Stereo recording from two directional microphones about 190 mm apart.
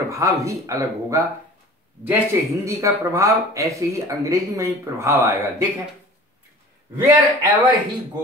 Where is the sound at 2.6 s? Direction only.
15° right (ahead or behind).